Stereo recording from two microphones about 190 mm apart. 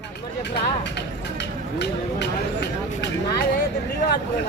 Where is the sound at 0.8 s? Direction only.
65° left (ahead or behind).